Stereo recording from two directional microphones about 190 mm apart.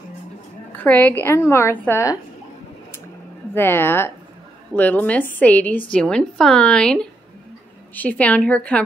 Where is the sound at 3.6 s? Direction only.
10° left (ahead or behind).